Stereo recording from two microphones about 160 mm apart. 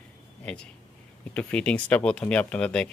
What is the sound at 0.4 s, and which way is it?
Speech, 5° left (ahead or behind).